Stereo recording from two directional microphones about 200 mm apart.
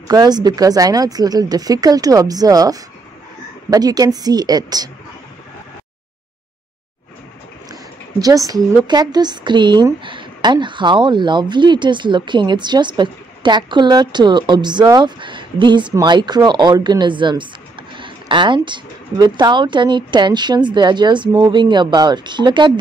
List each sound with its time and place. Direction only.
0.1 s speech: 20° right (ahead or behind)
8.2 s speech: 20° right (ahead or behind)